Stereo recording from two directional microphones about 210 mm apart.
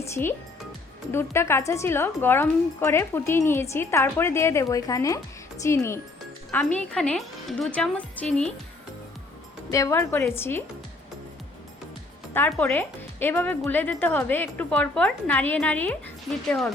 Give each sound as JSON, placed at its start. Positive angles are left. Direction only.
{"t": 0.0, "sound": "a woman's voice", "side_deg": 10}
{"t": 9.6, "sound": "a woman's voice", "side_deg": 15}
{"t": 12.3, "sound": "a woman's voice", "side_deg": 10}